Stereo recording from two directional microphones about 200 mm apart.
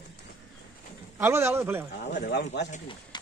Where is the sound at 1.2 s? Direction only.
15° right (ahead or behind).